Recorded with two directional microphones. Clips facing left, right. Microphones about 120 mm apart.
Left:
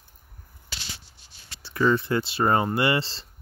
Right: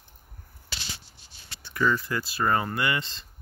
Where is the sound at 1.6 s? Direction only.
25° left (ahead or behind).